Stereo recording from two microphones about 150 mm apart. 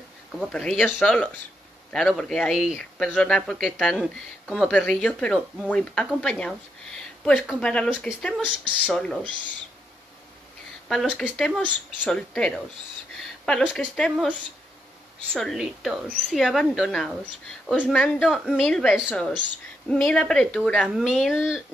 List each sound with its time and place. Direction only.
0.4 s speech: 5° left (ahead or behind)
7.6 s speech: 5° left (ahead or behind)
10.9 s speech: 5° left (ahead or behind)
15.3 s speech: centre (ahead or behind)